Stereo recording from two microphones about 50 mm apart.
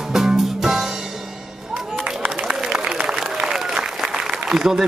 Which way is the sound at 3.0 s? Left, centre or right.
Centre.